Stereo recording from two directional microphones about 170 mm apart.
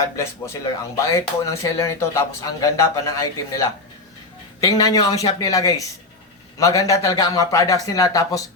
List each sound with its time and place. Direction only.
0.9 s a man's voice: 20° left (ahead or behind)